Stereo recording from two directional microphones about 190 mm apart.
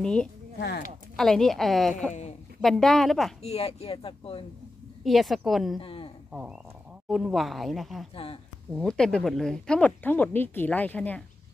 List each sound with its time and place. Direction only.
0.0 s speech: 5° left (ahead or behind)
0.6 s speech: 60° left (ahead or behind)
1.1 s speech: centre (ahead or behind)
3.4 s speech: 30° left (ahead or behind)
5.0 s speech: centre (ahead or behind)
5.8 s a sound: 30° left (ahead or behind)
7.1 s speech: centre (ahead or behind)
8.1 s speech: 30° left (ahead or behind)
8.7 s speech: 5° left (ahead or behind)